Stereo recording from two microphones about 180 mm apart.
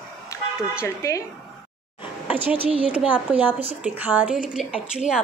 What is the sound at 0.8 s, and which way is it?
Speech, 15° left (ahead or behind).